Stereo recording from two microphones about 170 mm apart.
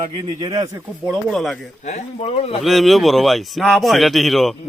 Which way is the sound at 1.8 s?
40° left (ahead or behind).